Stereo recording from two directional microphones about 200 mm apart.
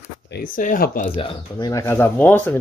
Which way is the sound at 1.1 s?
20° left (ahead or behind).